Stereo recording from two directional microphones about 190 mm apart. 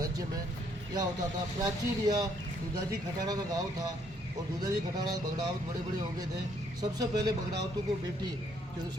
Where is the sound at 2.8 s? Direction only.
20° right (ahead or behind).